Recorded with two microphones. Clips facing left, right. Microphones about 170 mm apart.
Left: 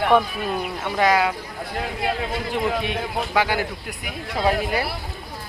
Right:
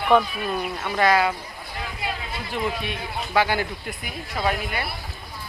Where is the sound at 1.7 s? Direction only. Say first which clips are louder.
Left 6 dB; 60° left (ahead or behind).